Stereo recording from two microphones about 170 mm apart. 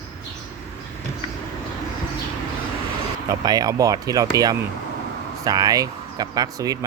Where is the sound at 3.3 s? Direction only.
20° right (ahead or behind).